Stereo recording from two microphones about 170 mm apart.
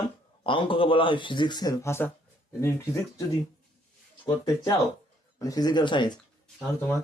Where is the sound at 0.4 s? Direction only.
30° left (ahead or behind).